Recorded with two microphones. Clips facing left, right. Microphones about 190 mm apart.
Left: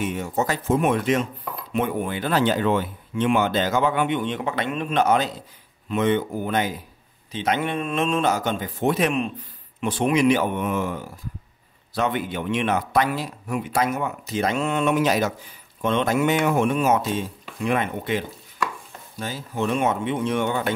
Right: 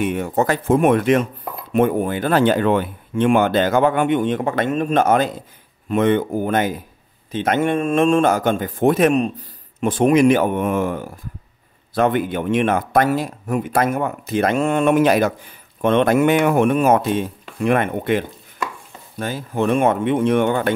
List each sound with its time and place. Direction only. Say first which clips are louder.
0.0 s a man's voice: right 5 dB; 60° right (ahead or behind)